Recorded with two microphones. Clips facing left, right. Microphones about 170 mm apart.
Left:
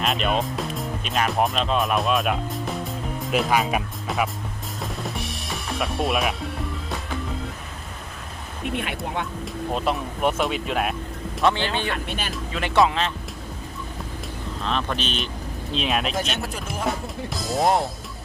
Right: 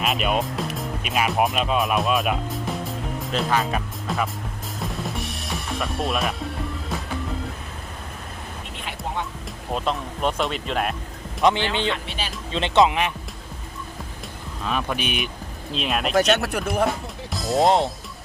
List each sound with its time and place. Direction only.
0.0 s speech: 5° right (ahead or behind)
3.5 s speech: 10° left (ahead or behind)
4.0 s speech: centre (ahead or behind)
4.8 s music: centre (ahead or behind)
8.7 s speech: 60° left (ahead or behind)
9.7 s speech: 10° left (ahead or behind)
11.4 s speech: 20° right (ahead or behind)
12.0 s speech: 50° left (ahead or behind)
12.5 s speech: 20° right (ahead or behind)
14.6 s speech: 10° right (ahead or behind)
15.7 s speech: centre (ahead or behind)
16.1 s speech: 65° right (ahead or behind)
17.3 s music: centre (ahead or behind)
17.6 s speech: 20° right (ahead or behind)